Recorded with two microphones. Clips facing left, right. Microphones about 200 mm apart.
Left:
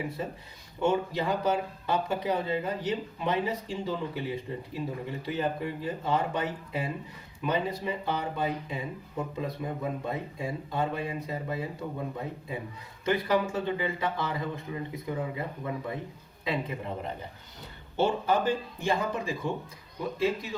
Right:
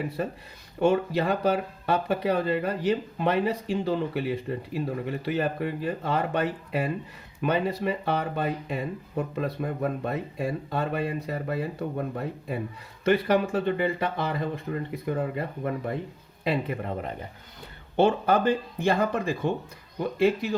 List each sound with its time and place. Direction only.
0.2 s speech: 70° right (ahead or behind)